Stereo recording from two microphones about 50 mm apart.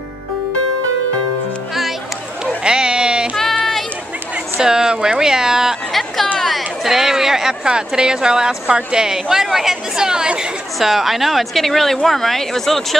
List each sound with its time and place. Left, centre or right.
2.6 s sheep: centre
3.3 s child singing: centre
4.6 s speech: centre
5.9 s a sound: centre
6.8 s speech: centre
10.8 s a woman's voice: centre